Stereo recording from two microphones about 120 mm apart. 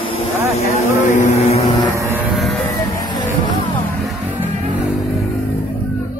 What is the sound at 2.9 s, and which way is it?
Music, 35° left (ahead or behind).